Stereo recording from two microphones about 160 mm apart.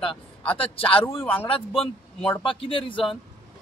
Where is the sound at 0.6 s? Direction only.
35° left (ahead or behind).